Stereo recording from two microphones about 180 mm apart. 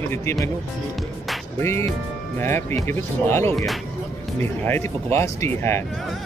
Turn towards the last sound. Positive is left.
turn(degrees=15)  # may be behind; listen again after turning